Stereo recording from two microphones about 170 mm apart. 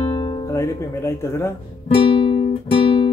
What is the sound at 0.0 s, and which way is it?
Music, 30° left (ahead or behind).